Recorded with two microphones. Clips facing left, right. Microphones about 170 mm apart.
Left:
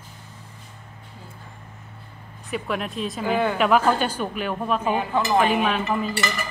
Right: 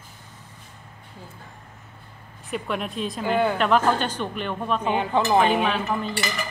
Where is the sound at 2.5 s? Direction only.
Centre (ahead or behind).